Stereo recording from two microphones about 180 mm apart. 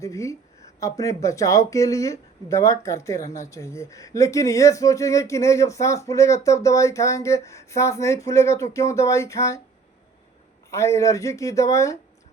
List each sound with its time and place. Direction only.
0.0 s speech: 15° left (ahead or behind)
3.2 s speech: 40° left (ahead or behind)
3.5 s speech: 15° left (ahead or behind)
10.7 s speech: 15° left (ahead or behind)